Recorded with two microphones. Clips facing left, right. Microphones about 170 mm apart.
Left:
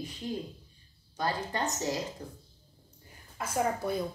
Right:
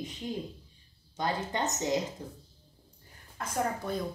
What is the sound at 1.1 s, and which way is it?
Speech, 20° right (ahead or behind).